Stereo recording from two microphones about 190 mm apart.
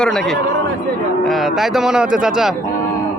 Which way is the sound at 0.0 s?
5° left (ahead or behind).